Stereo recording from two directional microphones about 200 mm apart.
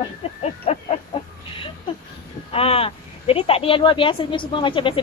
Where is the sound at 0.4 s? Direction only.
30° left (ahead or behind).